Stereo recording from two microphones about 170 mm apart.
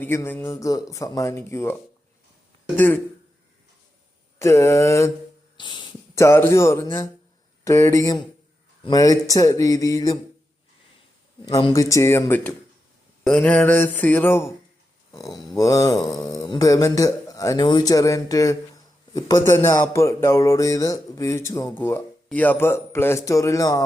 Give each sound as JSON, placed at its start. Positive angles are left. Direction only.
{"t": 0.0, "sound": "speech", "side_deg": 15}
{"t": 2.7, "sound": "speech", "side_deg": 10}
{"t": 4.4, "sound": "speech", "side_deg": 15}
{"t": 9.3, "sound": "mantra", "side_deg": 20}
{"t": 11.4, "sound": "speech", "side_deg": 20}
{"t": 15.1, "sound": "mantra", "side_deg": 20}
{"t": 19.5, "sound": "speech", "side_deg": 15}